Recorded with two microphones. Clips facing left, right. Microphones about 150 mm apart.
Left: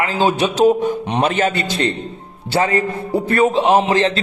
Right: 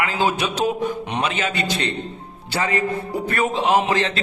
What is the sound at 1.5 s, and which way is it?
A man's voice, 40° left (ahead or behind).